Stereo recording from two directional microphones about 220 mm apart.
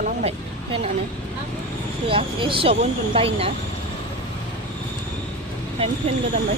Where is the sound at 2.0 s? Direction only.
25° right (ahead or behind).